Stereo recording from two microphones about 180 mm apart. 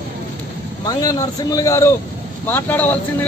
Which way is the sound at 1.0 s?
20° left (ahead or behind).